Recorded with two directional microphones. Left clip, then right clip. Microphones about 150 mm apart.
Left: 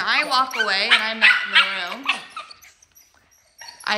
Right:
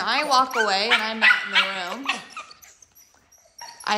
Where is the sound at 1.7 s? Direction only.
25° right (ahead or behind).